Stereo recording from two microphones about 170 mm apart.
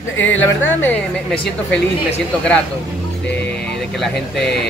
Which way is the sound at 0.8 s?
10° left (ahead or behind).